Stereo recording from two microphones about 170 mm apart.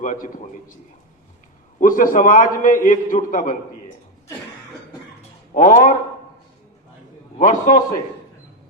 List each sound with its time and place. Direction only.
0.0 s a man's voice: 50° left (ahead or behind)
1.8 s a man's voice: 55° left (ahead or behind)
5.5 s a man's voice: 50° left (ahead or behind)
7.3 s a man's voice: 50° left (ahead or behind)